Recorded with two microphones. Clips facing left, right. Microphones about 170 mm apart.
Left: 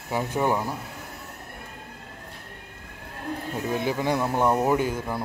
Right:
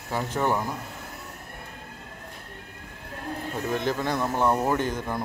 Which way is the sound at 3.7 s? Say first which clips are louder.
Left 2 dB; 10° left (ahead or behind).